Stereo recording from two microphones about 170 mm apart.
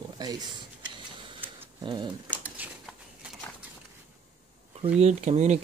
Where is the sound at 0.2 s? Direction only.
25° right (ahead or behind).